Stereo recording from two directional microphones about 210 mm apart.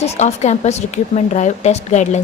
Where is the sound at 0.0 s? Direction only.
30° left (ahead or behind).